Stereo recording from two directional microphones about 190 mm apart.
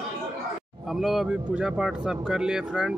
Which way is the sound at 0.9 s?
Centre (ahead or behind).